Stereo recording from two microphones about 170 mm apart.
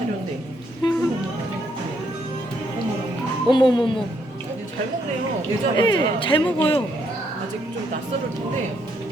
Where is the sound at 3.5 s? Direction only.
25° left (ahead or behind).